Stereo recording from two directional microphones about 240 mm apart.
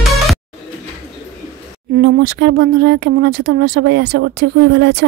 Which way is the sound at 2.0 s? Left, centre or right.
Right.